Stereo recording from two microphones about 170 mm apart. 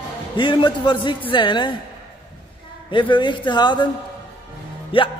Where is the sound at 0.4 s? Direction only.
30° left (ahead or behind).